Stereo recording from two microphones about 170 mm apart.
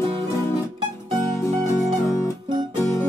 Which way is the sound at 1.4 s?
15° left (ahead or behind).